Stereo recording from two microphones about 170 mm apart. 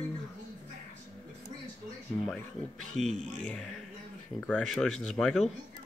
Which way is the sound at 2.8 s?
40° right (ahead or behind).